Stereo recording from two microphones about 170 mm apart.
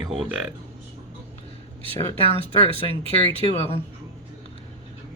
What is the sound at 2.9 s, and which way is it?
Speech, 30° right (ahead or behind).